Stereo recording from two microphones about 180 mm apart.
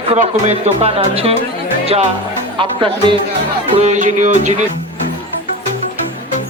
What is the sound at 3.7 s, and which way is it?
Speech, 40° right (ahead or behind).